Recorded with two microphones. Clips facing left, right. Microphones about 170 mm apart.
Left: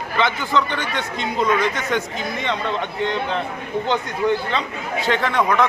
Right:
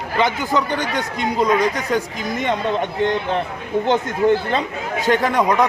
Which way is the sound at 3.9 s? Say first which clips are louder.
Right 4 dB; 45° right (ahead or behind).